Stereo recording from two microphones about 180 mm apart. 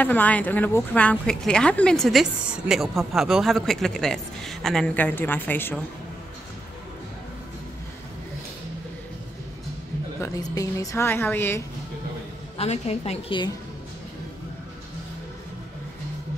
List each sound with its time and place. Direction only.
0.0 s speech: 10° left (ahead or behind)
10.2 s a woman's voice: 20° left (ahead or behind)
12.5 s a woman's voice: 35° left (ahead or behind)